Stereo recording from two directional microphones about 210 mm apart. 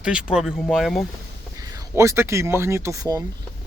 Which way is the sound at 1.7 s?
15° right (ahead or behind).